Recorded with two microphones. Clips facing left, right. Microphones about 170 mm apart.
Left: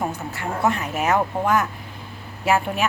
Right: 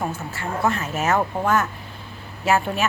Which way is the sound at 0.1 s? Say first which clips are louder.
Even; 15° left (ahead or behind).